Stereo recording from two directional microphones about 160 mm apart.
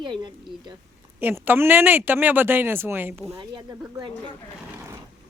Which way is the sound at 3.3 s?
25° right (ahead or behind).